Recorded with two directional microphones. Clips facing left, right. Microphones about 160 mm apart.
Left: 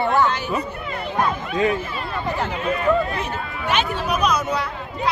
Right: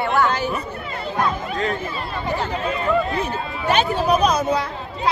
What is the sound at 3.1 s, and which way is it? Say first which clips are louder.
Speech: right 3 dB; 35° right (ahead or behind).